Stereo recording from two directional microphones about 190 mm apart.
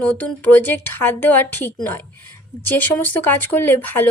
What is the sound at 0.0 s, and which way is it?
Speech, 5° left (ahead or behind).